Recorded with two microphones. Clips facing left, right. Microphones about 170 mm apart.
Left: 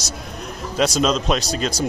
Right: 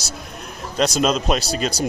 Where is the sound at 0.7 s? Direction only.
Centre (ahead or behind).